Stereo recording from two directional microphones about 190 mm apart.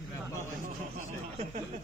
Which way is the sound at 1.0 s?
35° right (ahead or behind).